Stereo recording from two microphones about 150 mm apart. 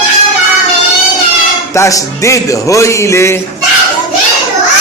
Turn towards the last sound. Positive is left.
turn(degrees=20)  # may be behind; listen again after turning